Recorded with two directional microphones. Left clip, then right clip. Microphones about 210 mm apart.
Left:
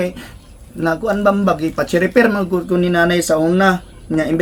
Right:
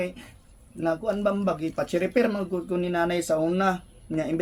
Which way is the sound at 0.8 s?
10° left (ahead or behind).